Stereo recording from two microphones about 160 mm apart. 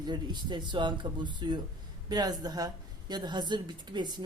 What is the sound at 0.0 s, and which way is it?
A woman's voice, 30° right (ahead or behind).